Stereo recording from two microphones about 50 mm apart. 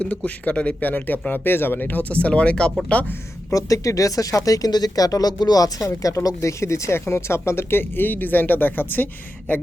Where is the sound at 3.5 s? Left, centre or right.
Left.